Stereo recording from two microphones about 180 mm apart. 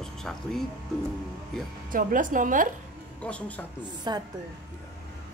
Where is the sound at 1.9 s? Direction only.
50° right (ahead or behind).